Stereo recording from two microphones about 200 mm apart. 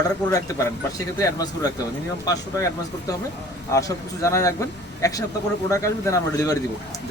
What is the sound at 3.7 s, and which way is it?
A man's voice, 15° left (ahead or behind).